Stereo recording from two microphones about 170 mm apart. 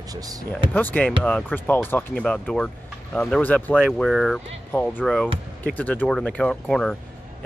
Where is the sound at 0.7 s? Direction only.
10° left (ahead or behind).